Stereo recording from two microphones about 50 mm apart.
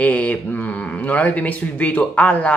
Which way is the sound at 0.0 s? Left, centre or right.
Left.